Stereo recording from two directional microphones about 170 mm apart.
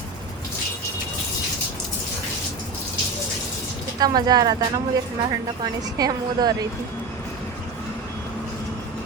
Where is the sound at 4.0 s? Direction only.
25° right (ahead or behind).